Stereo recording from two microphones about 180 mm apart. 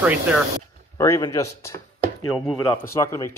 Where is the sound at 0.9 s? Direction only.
20° left (ahead or behind).